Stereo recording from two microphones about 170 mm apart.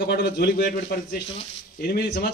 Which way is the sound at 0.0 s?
75° left (ahead or behind).